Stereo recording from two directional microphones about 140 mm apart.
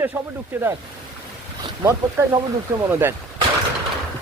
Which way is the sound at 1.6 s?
30° right (ahead or behind).